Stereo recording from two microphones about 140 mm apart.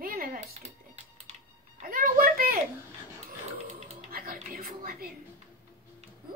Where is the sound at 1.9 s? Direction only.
90° right.